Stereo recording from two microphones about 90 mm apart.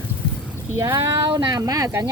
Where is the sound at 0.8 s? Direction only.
35° right (ahead or behind).